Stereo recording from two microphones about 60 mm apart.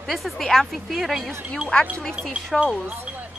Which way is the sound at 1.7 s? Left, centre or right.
Centre.